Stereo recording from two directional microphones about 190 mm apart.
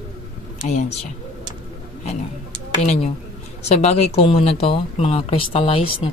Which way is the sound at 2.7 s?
35° left (ahead or behind).